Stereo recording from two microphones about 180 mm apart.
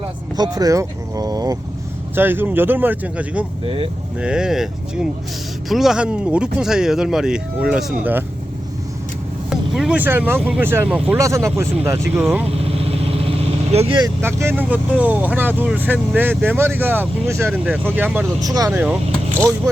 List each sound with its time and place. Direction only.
0.3 s speech: 20° right (ahead or behind); by 8.2 s 5° right (ahead or behind)
9.5 s speech: centre (ahead or behind)
12.5 s vehicle: 35° right (ahead or behind)
14.2 s speech: 15° right (ahead or behind)
18.4 s speech: 20° right (ahead or behind)